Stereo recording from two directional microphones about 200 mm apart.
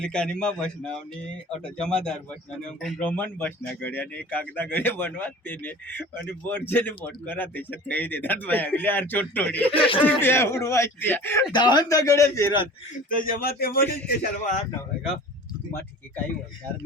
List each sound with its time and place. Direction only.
0.0 s speech: 5° left (ahead or behind)
9.6 s speech: 25° left (ahead or behind)
10.0 s speech: 10° left (ahead or behind)
11.5 s speech: 20° left (ahead or behind)
13.1 s a man's voice: 45° left (ahead or behind)